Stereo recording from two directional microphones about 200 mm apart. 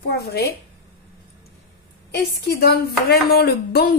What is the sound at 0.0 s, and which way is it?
Speech, 55° left (ahead or behind).